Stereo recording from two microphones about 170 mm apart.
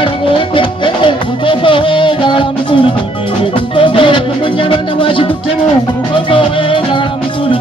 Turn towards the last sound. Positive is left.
turn(degrees=30)  # may be behind; listen again after turning